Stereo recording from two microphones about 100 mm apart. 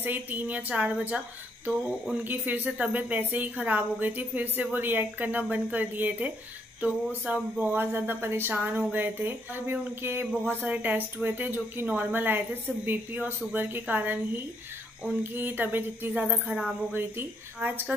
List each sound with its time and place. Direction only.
0.0 s speech: 15° right (ahead or behind)
1.7 s a sound: 5° right (ahead or behind)
2.2 s speech: 15° right (ahead or behind)